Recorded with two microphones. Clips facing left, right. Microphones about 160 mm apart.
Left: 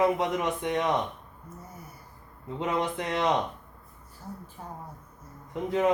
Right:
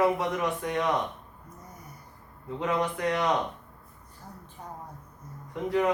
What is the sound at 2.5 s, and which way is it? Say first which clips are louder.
Speech: even; 20° left (ahead or behind).